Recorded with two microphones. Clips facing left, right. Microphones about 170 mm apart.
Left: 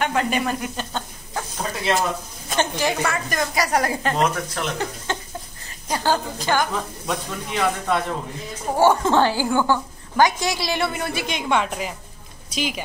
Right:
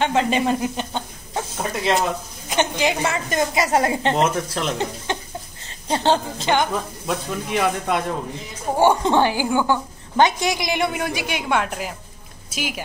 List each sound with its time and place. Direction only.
0.0 s speech: 25° right (ahead or behind)
2.5 s a woman's voice: 20° right (ahead or behind)
7.1 s a woman's voice: 10° right (ahead or behind)